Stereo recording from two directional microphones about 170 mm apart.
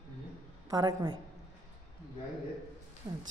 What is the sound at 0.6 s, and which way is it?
Speech, 25° right (ahead or behind).